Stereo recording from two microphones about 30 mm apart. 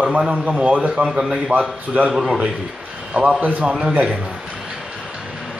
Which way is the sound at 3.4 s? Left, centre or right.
Right.